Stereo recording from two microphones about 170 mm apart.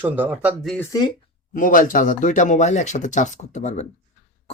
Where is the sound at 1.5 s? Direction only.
55° left (ahead or behind).